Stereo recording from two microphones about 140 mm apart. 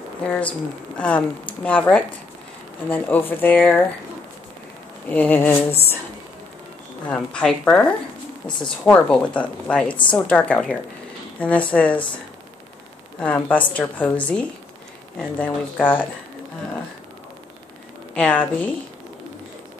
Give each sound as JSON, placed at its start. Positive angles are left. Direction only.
{"t": 0.3, "sound": "speech", "side_deg": 10}
{"t": 5.1, "sound": "speech", "side_deg": 15}
{"t": 7.1, "sound": "speech", "side_deg": 5}
{"t": 13.2, "sound": "speech", "side_deg": 10}
{"t": 18.1, "sound": "a woman's voice", "side_deg": 10}